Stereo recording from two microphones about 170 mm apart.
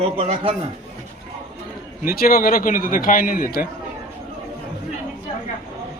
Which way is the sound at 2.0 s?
60° left (ahead or behind).